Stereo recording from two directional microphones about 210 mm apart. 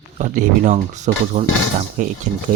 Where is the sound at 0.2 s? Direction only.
35° right (ahead or behind).